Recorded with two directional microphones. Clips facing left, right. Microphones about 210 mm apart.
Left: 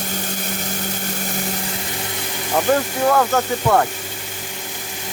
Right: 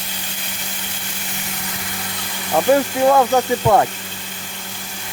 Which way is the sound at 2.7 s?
10° right (ahead or behind).